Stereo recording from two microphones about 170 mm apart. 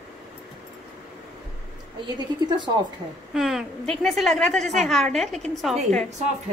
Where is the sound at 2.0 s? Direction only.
25° right (ahead or behind).